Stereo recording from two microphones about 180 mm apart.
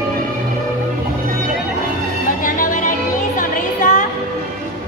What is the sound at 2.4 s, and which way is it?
Music, 50° left (ahead or behind).